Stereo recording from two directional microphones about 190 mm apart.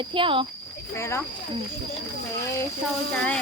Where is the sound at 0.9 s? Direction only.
15° left (ahead or behind).